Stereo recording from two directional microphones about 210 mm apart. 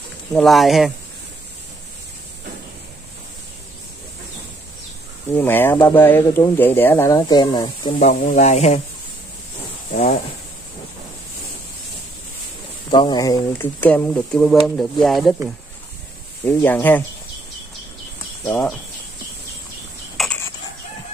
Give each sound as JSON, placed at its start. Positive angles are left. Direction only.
{"t": 0.3, "sound": "speech", "side_deg": 0}
{"t": 5.3, "sound": "speech", "side_deg": 10}
{"t": 8.0, "sound": "a sound", "side_deg": 35}
{"t": 9.9, "sound": "a sound", "side_deg": 35}
{"t": 12.9, "sound": "speech", "side_deg": 20}
{"t": 16.4, "sound": "speech", "side_deg": 10}
{"t": 18.4, "sound": "speech", "side_deg": 15}
{"t": 20.2, "sound": "cutlery", "side_deg": 5}